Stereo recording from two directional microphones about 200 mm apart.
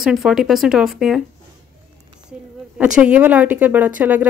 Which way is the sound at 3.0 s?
5° right (ahead or behind).